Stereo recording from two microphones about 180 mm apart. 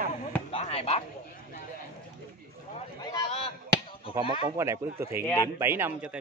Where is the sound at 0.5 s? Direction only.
30° left (ahead or behind).